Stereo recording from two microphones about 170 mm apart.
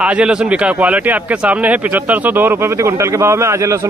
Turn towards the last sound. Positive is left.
turn(degrees=-15)  # may be behind; listen again after turning